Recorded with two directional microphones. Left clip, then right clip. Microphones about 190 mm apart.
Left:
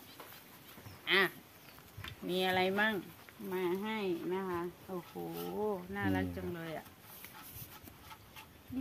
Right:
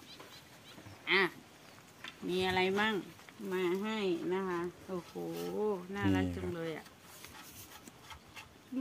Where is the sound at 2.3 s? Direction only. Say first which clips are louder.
Even; 25° left (ahead or behind).